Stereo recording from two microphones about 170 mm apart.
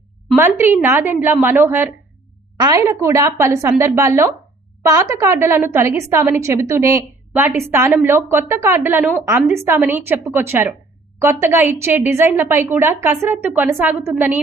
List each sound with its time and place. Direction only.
0.3 s a woman's voice: 15° right (ahead or behind)